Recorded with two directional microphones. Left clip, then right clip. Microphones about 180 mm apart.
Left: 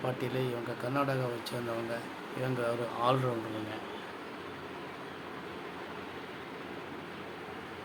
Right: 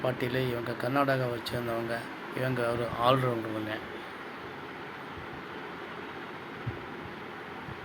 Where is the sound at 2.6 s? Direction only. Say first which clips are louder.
Right 3 dB; 15° right (ahead or behind).